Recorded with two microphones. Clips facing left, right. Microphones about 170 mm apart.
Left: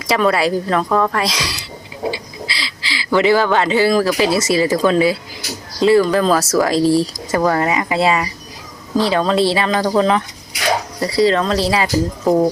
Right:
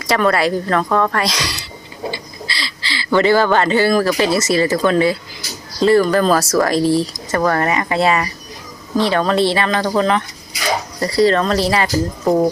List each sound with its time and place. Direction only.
0.1 s speech: 5° left (ahead or behind)
2.0 s bird: 5° left (ahead or behind)
4.4 s speech: 10° left (ahead or behind)
6.7 s speech: 35° left (ahead or behind)
7.3 s speech: 10° left (ahead or behind)
9.5 s speech: 10° left (ahead or behind)